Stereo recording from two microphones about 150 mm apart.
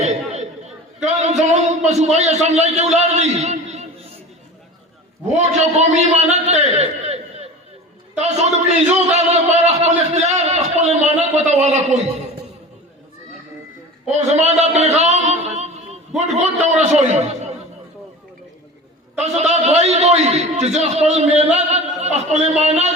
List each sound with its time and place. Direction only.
1.0 s music: 50° right (ahead or behind)
1.9 s a man's voice: 50° right (ahead or behind)
5.3 s a man's voice: 50° right (ahead or behind)
14.1 s a man's voice: 50° right (ahead or behind)
19.2 s a man's voice: 50° right (ahead or behind)